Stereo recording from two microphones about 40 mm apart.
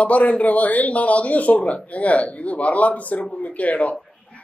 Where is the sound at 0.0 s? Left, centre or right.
Left.